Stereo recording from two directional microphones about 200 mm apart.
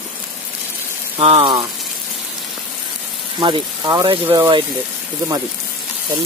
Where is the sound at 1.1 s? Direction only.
25° right (ahead or behind).